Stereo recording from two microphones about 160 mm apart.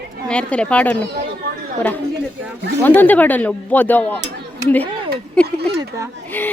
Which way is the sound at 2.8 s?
10° left (ahead or behind).